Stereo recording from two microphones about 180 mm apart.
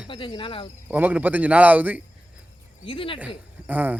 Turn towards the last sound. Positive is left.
turn(degrees=-10)  # may be behind; listen again after turning